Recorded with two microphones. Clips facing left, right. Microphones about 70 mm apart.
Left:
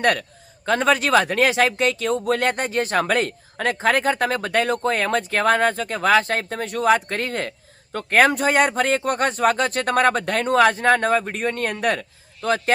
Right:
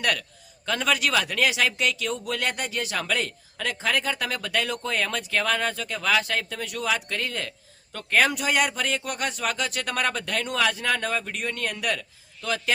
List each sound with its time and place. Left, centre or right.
0.0 s a man's voice: left